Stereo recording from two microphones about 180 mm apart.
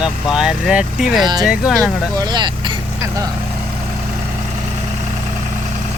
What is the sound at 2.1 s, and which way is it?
Speech, 25° right (ahead or behind).